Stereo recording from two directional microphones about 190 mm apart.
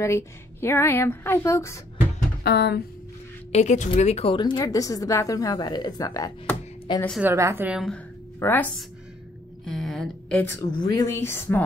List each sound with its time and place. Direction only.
0.0 s a woman's voice: 15° left (ahead or behind)
2.4 s speech: 60° left (ahead or behind)
3.5 s a woman's voice: 40° left (ahead or behind); by 7.2 s 10° left (ahead or behind)
7.2 s a woman's voice: 15° right (ahead or behind)
8.4 s a woman's voice: 10° left (ahead or behind)
9.7 s a woman's voice: centre (ahead or behind)